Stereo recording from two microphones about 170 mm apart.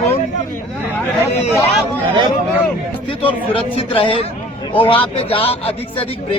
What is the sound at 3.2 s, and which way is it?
A man's voice, 30° left (ahead or behind).